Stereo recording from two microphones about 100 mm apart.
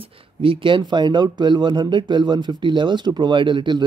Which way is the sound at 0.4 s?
60° right (ahead or behind).